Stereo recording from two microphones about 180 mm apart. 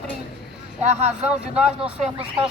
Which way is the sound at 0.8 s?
40° right (ahead or behind).